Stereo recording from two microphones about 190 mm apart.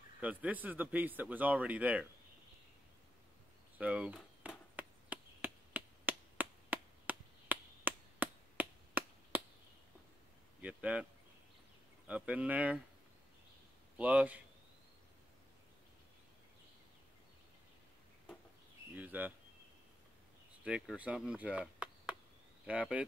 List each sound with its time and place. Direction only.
0.2 s a man's voice: 10° right (ahead or behind)
3.7 s speech: 5° right (ahead or behind)
4.7 s chop: 10° right (ahead or behind)
10.6 s a sound: 5° right (ahead or behind)
12.1 s a man's voice: 5° right (ahead or behind)
13.9 s a man's voice: 5° right (ahead or behind)
18.9 s a man's voice: 10° right (ahead or behind)
20.6 s a man's voice: 5° right (ahead or behind)